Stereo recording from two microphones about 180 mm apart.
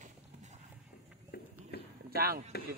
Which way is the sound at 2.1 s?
55° right (ahead or behind).